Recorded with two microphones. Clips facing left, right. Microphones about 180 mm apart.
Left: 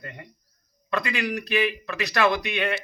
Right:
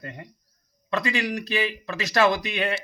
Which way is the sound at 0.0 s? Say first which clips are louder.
Right 2 dB; 30° right (ahead or behind).